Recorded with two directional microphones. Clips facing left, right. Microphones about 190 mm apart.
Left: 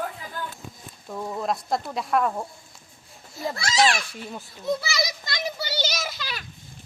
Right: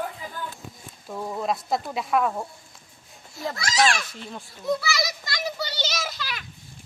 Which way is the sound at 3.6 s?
25° left (ahead or behind).